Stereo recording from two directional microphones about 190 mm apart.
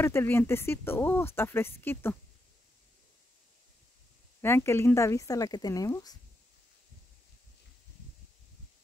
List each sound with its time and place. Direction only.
0.0 s speech: 10° left (ahead or behind)
4.4 s speech: 10° left (ahead or behind)